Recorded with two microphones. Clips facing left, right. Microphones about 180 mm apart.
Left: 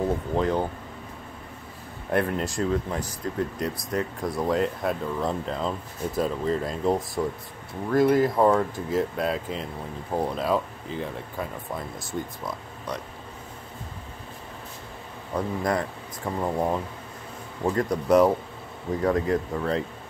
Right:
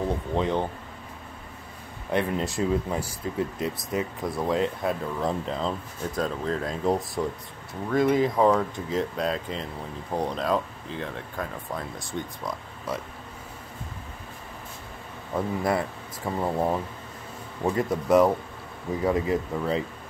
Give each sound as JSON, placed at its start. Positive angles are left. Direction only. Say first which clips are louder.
{"t": 0.3, "sound": "speech", "louder": "even", "side_deg": 0}
{"t": 2.0, "sound": "speech", "louder": "left 1 dB", "side_deg": 0}
{"t": 15.3, "sound": "speech", "louder": "even", "side_deg": -5}